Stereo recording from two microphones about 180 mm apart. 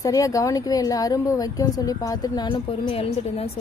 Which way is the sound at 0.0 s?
20° left (ahead or behind).